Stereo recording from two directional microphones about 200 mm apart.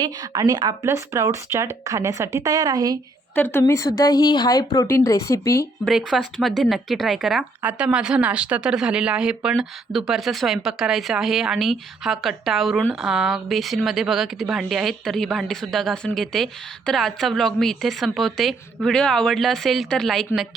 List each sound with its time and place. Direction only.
0.0 s speech: 20° right (ahead or behind)
3.3 s speech: 10° left (ahead or behind)
6.1 s speech: centre (ahead or behind)